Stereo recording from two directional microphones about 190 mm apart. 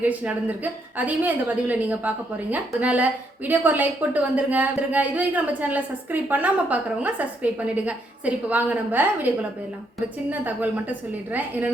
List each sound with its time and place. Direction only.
0.0 s a woman's voice: 10° right (ahead or behind)